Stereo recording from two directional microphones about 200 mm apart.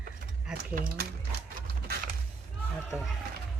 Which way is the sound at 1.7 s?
55° right (ahead or behind).